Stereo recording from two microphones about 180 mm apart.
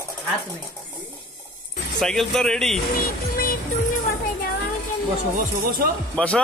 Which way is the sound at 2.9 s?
55° left (ahead or behind).